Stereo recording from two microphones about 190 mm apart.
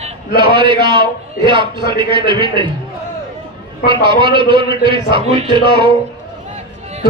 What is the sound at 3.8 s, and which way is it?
A man's voice, 25° right (ahead or behind).